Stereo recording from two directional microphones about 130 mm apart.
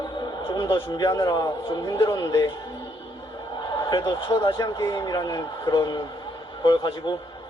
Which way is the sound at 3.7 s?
30° left (ahead or behind).